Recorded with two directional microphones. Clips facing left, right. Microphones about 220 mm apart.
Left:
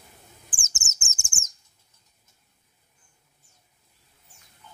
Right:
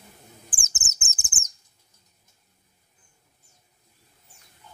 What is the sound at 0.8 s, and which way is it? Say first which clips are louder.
Bird: right 1 dB; 15° right (ahead or behind).